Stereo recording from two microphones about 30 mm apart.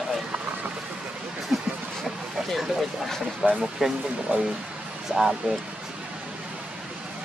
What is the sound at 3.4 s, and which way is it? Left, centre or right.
Speech, right.